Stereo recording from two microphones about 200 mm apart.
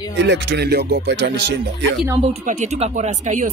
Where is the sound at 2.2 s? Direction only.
35° right (ahead or behind).